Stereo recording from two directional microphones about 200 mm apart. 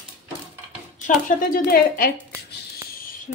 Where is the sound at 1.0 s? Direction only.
45° left (ahead or behind).